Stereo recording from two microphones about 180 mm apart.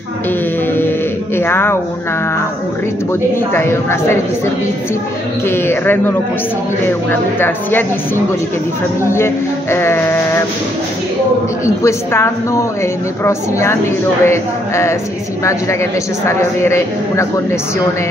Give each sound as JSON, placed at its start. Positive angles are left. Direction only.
{"t": 0.7, "sound": "mantra", "side_deg": 10}
{"t": 3.1, "sound": "a man's voice", "side_deg": 15}
{"t": 5.5, "sound": "a man's voice", "side_deg": 10}
{"t": 9.1, "sound": "a man's voice", "side_deg": 15}
{"t": 11.6, "sound": "a man's voice", "side_deg": 15}